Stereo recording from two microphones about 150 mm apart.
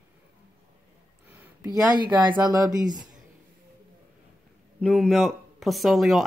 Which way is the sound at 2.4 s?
25° right (ahead or behind).